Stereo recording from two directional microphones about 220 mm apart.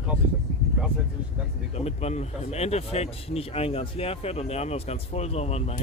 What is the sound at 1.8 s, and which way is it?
Speech, 30° left (ahead or behind).